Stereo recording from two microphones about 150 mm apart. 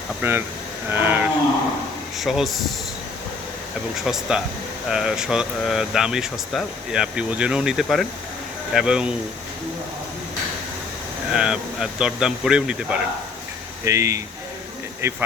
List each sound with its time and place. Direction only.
0.2 s a sound: 15° right (ahead or behind)
2.1 s speech: centre (ahead or behind)
3.9 s speech: 5° right (ahead or behind)
11.3 s speech: 5° right (ahead or behind)
13.8 s speech: 20° right (ahead or behind)
15.0 s a sound: 15° right (ahead or behind)